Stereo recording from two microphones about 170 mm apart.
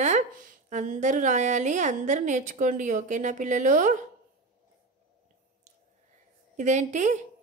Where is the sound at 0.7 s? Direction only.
45° right (ahead or behind).